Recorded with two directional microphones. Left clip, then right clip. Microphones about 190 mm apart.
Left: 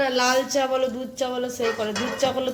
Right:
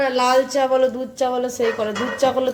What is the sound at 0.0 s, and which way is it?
A woman's voice, 5° right (ahead or behind).